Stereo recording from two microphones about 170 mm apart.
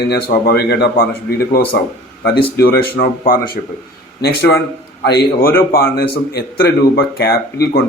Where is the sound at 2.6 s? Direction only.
60° left (ahead or behind).